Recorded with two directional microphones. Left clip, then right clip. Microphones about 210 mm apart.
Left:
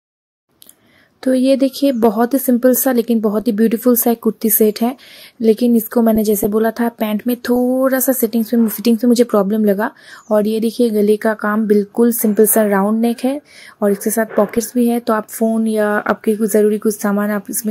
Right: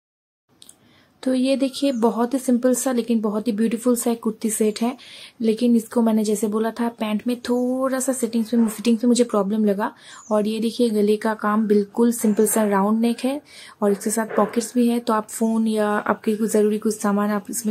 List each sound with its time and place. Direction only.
1.2 s speech: 25° left (ahead or behind)